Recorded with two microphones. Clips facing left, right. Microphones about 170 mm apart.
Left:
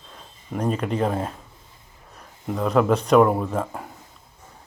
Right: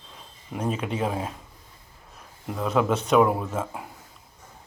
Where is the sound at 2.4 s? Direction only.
Centre (ahead or behind).